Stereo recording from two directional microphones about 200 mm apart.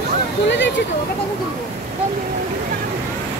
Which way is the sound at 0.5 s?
65° left (ahead or behind).